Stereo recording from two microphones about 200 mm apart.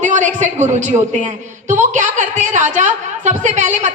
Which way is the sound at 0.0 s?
35° right (ahead or behind).